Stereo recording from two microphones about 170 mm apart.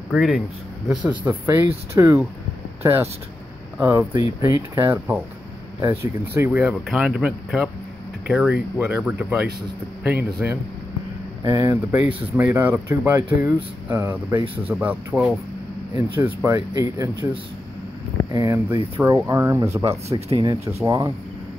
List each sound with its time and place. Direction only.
0.1 s speech: 5° right (ahead or behind)
11.4 s speech: 20° right (ahead or behind)
14.3 s speech: 30° right (ahead or behind)
14.7 s speech: 10° right (ahead or behind)
20.1 s speech: 35° right (ahead or behind)
20.6 s speech: 20° right (ahead or behind)